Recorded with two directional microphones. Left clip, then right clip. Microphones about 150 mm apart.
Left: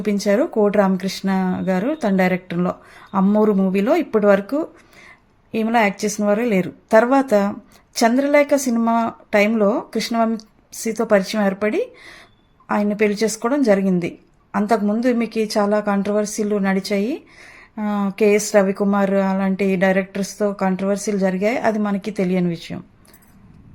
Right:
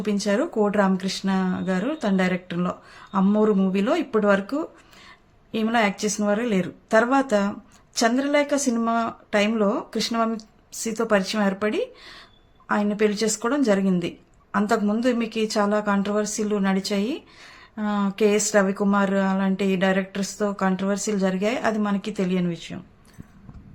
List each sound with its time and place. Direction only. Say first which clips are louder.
0.0 s a woman's voice: left 5 dB; 30° left (ahead or behind)